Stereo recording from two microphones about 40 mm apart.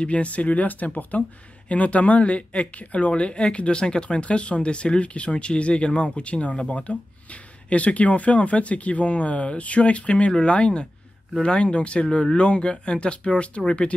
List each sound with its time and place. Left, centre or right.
0.0 s speech: left